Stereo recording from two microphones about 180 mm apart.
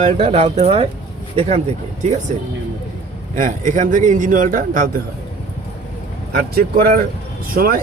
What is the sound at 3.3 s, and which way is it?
A man's voice, 45° right (ahead or behind).